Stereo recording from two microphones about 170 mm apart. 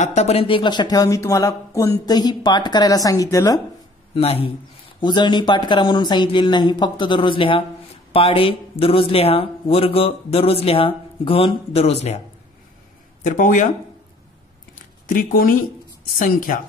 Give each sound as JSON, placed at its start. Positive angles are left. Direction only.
{"t": 0.0, "sound": "speech", "side_deg": 40}
{"t": 4.1, "sound": "a man's voice", "side_deg": 35}
{"t": 13.2, "sound": "speech", "side_deg": 50}
{"t": 15.0, "sound": "speech", "side_deg": 60}